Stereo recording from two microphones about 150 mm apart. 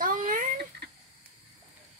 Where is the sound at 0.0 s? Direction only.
65° right (ahead or behind).